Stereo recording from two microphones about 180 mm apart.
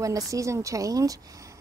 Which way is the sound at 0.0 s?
20° right (ahead or behind).